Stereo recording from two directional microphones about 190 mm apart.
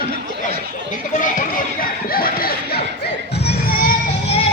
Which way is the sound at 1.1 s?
45° left (ahead or behind).